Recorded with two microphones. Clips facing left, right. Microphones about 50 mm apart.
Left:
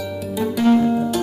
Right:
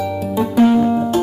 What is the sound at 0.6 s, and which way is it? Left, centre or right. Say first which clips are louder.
Music: right 1 dB; centre.